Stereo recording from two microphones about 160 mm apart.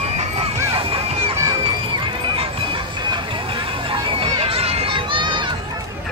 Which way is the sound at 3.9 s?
35° right (ahead or behind).